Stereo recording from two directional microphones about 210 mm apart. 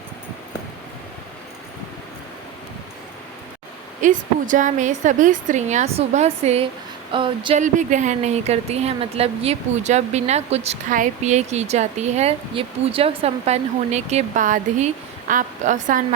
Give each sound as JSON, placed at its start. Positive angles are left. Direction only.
{"t": 4.0, "sound": "speech", "side_deg": -40}
{"t": 7.6, "sound": "speech", "side_deg": -35}